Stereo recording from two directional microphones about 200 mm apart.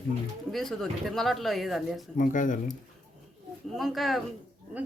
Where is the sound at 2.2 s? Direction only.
40° left (ahead or behind).